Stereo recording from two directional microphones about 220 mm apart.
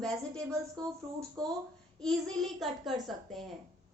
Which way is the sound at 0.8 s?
15° right (ahead or behind).